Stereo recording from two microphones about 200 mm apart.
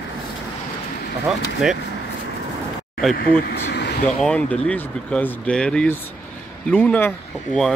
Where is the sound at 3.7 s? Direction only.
55° left (ahead or behind).